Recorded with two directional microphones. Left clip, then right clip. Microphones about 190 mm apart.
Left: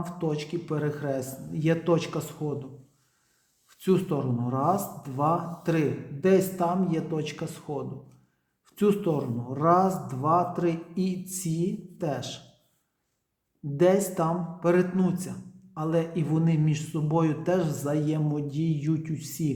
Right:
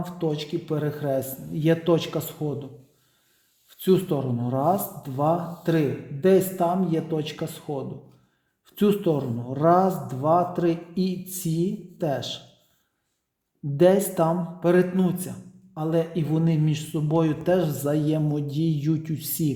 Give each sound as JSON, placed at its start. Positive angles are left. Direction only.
{"t": 0.0, "sound": "a man's voice", "side_deg": -25}
{"t": 3.7, "sound": "a man's voice", "side_deg": -25}
{"t": 13.7, "sound": "a man's voice", "side_deg": -30}